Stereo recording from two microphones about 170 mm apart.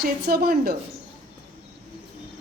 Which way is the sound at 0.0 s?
65° right (ahead or behind).